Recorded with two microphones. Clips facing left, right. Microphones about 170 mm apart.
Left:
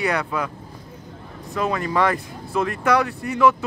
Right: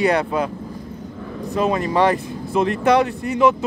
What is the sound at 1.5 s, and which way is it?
Speech, 20° right (ahead or behind).